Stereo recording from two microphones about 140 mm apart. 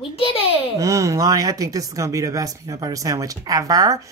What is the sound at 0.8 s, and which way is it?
Speech, 20° right (ahead or behind).